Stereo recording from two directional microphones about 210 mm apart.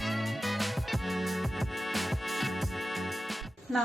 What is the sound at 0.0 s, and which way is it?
Music, centre (ahead or behind).